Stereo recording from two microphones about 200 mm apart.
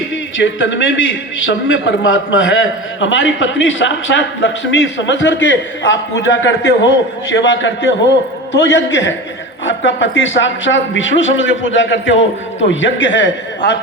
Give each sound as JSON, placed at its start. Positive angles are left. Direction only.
{"t": 0.3, "sound": "a man's voice", "side_deg": 70}